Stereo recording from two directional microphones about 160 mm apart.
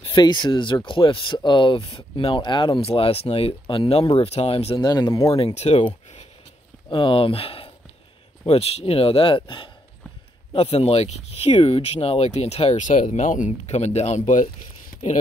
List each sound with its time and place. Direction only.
0.0 s speech: 25° left (ahead or behind)
4.8 s speech: 25° left (ahead or behind)
5.2 s speech: 35° left (ahead or behind); by 14.5 s 50° left (ahead or behind)